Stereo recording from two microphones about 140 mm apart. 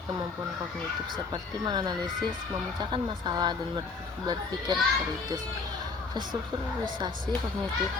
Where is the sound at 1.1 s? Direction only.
30° right (ahead or behind).